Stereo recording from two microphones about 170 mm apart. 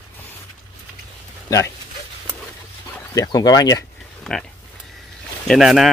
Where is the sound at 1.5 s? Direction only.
15° left (ahead or behind).